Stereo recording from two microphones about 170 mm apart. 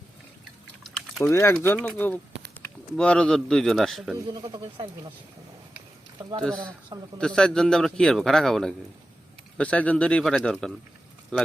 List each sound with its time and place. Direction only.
1.2 s a man's voice: 15° left (ahead or behind)
4.3 s speech: 25° right (ahead or behind)
7.2 s a man's voice: 5° left (ahead or behind)